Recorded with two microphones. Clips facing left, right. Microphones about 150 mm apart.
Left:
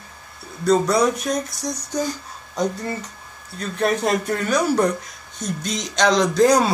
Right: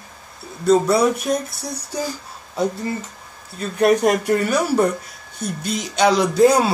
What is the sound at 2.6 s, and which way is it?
Speech, 5° right (ahead or behind).